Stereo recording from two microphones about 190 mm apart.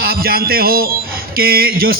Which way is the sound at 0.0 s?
50° right (ahead or behind).